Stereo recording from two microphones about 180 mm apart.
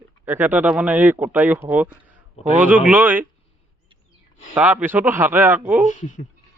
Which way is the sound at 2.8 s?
10° right (ahead or behind).